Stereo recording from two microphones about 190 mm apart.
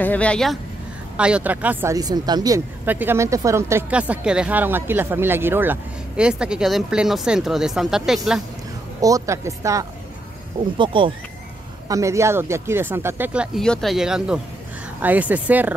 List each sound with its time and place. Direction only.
0.0 s speech: 5° left (ahead or behind)
9.0 s speech: 15° right (ahead or behind)
11.9 s speech: 15° right (ahead or behind)